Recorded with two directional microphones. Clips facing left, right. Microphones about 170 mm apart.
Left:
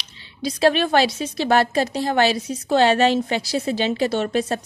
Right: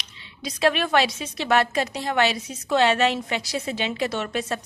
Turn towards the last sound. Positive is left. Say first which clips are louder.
# left 6 dB
turn(degrees=35)  # may be behind; listen again after turning